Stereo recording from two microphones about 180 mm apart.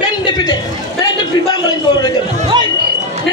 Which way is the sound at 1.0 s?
25° left (ahead or behind).